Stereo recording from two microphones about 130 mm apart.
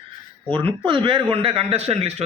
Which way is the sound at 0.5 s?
40° right (ahead or behind).